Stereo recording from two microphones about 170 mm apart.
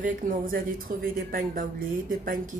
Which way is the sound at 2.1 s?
55° right (ahead or behind).